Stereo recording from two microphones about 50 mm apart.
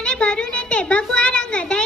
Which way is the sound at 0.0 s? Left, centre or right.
Centre.